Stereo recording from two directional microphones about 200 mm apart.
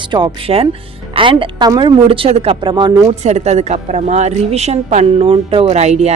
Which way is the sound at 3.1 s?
35° right (ahead or behind).